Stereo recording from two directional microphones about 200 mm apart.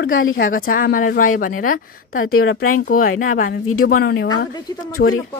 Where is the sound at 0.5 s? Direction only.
45° left (ahead or behind).